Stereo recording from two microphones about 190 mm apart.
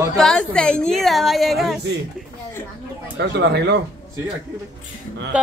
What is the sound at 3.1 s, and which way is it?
Speech, 65° right (ahead or behind).